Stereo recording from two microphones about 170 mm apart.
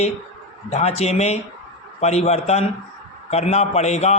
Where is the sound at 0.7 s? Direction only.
40° left (ahead or behind).